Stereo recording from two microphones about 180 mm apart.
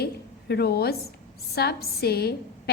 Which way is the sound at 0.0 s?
65° left (ahead or behind).